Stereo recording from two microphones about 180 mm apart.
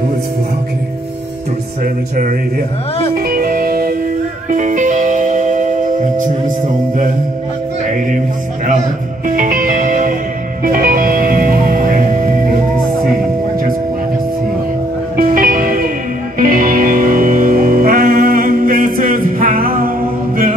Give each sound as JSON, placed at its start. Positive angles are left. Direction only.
{"t": 3.2, "sound": "music", "side_deg": -50}
{"t": 9.4, "sound": "music", "side_deg": -50}
{"t": 15.1, "sound": "music", "side_deg": -50}